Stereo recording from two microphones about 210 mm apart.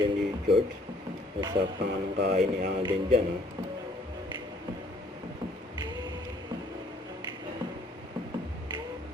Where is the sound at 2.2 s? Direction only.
50° right (ahead or behind).